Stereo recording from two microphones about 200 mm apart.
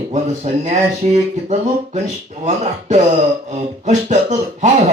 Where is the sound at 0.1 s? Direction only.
35° right (ahead or behind).